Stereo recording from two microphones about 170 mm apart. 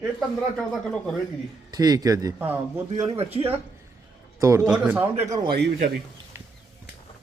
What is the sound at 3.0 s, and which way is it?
Speech, 35° right (ahead or behind).